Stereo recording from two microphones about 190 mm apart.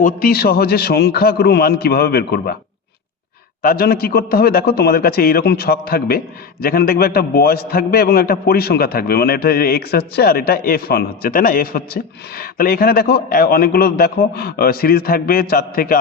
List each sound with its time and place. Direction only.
0.0 s a man's voice: 50° left (ahead or behind)
3.6 s a man's voice: 50° left (ahead or behind)